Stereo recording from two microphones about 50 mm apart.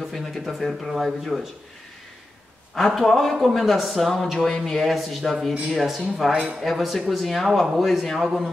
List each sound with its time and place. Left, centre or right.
0.1 s speech: centre
3.0 s speech: centre
6.3 s speech: centre
6.6 s speech: centre